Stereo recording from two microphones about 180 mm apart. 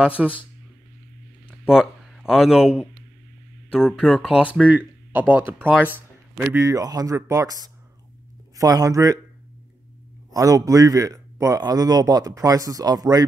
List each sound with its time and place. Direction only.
0.2 s speech: 5° right (ahead or behind)
1.7 s a man's voice: centre (ahead or behind); by 9.2 s 20° right (ahead or behind)
10.3 s a man's voice: 20° right (ahead or behind)